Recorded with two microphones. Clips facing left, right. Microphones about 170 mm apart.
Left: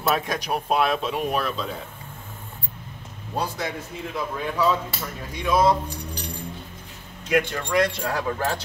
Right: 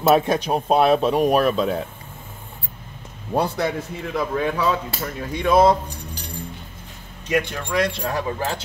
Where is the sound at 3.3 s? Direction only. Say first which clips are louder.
Right 6 dB; 60° right (ahead or behind).